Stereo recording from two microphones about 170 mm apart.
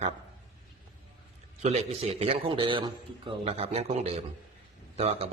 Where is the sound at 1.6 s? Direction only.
40° right (ahead or behind).